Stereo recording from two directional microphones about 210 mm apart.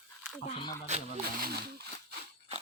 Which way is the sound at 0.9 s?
30° right (ahead or behind).